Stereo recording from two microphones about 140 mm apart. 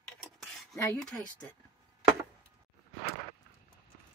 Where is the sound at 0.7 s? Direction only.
20° left (ahead or behind).